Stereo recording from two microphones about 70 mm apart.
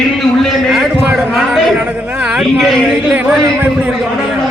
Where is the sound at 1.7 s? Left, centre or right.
Centre.